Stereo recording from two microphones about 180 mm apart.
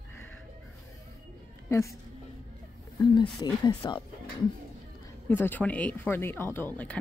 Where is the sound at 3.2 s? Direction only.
25° left (ahead or behind).